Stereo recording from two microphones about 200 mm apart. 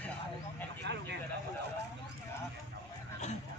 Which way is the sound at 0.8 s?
60° right (ahead or behind).